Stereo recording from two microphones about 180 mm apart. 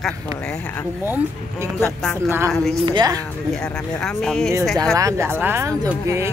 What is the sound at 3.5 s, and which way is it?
Speech, 5° left (ahead or behind).